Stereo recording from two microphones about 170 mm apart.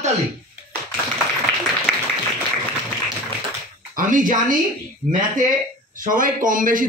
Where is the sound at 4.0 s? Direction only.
50° right (ahead or behind).